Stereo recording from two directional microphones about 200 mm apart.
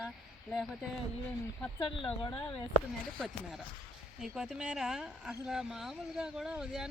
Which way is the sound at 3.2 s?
Centre (ahead or behind).